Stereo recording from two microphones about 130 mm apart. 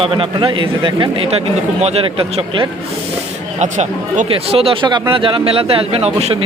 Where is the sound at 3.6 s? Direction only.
65° right (ahead or behind).